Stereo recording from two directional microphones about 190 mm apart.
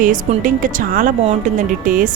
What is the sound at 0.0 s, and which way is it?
Speech, 45° right (ahead or behind).